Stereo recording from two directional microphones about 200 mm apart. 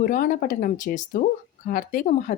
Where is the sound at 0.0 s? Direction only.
45° left (ahead or behind).